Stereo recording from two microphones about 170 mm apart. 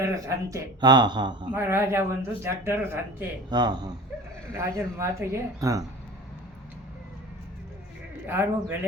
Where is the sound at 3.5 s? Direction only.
25° right (ahead or behind).